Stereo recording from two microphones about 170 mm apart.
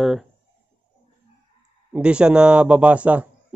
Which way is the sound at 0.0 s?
Centre (ahead or behind).